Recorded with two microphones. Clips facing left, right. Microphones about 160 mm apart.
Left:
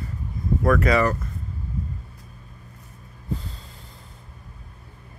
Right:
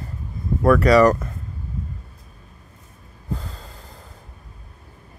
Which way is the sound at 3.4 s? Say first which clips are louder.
Right 3 dB; 45° right (ahead or behind).